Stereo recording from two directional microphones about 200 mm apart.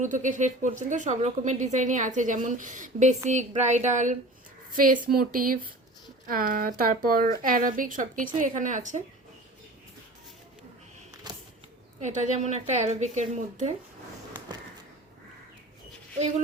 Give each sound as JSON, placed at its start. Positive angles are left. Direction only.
{"t": 0.0, "sound": "a woman's voice", "side_deg": -40}
{"t": 11.3, "sound": "a sound", "side_deg": -20}
{"t": 11.9, "sound": "a woman's voice", "side_deg": -35}